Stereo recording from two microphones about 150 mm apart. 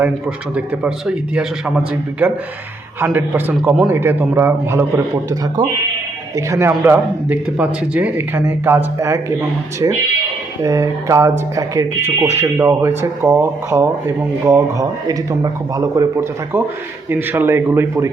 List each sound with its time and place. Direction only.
0.5 s a man's voice: 5° right (ahead or behind)
3.8 s speech: 15° right (ahead or behind)
6.3 s speech: 20° right (ahead or behind)